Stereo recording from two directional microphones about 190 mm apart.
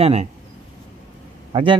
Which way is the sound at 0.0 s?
35° right (ahead or behind).